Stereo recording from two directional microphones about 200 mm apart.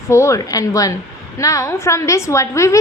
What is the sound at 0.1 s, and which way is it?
A woman's voice, 15° left (ahead or behind).